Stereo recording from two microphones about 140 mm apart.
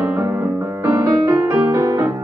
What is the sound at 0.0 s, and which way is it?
Music, 15° right (ahead or behind).